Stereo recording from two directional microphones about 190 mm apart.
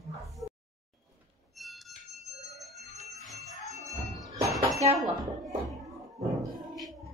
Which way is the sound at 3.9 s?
Centre (ahead or behind).